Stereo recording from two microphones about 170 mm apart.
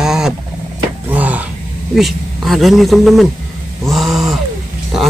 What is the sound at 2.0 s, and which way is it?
Speech, centre (ahead or behind).